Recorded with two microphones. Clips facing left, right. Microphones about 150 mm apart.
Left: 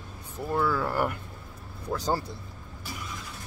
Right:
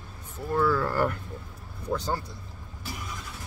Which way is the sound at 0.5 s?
10° left (ahead or behind).